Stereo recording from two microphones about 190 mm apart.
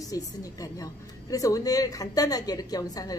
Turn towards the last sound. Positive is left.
turn(degrees=20)  # may be behind; listen again after turning